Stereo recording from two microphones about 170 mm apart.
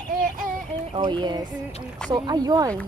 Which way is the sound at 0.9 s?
25° right (ahead or behind).